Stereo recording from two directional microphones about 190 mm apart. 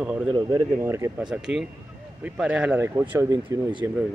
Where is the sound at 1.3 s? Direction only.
5° right (ahead or behind).